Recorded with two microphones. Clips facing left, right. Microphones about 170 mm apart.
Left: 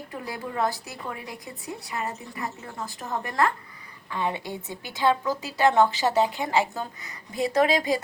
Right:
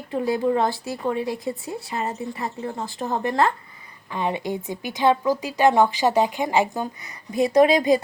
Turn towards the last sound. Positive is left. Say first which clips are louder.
# right 6 dB
turn(degrees=-20)  # may be behind; listen again after turning